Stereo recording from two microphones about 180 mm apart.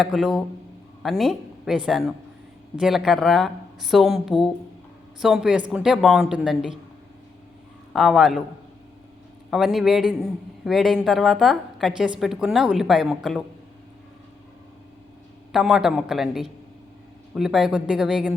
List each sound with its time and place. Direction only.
0.0 s a man's voice: centre (ahead or behind)
7.9 s a man's voice: centre (ahead or behind)
9.5 s a man's voice: centre (ahead or behind)
15.5 s a man's voice: centre (ahead or behind)